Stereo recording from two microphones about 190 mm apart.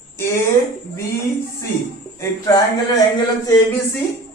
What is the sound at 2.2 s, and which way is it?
Speech, 15° left (ahead or behind).